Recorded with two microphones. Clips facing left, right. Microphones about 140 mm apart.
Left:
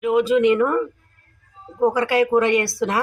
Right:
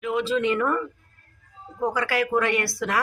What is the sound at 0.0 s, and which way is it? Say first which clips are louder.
Speech: left 7 dB; 15° left (ahead or behind).